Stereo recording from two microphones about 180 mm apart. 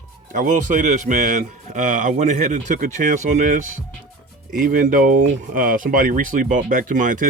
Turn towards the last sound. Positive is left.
turn(degrees=-45)  # may be behind; listen again after turning